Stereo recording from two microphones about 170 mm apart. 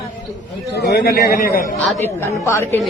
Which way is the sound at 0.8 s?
70° left (ahead or behind).